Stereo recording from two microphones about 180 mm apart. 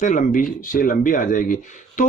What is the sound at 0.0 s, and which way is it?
Speech, 45° left (ahead or behind).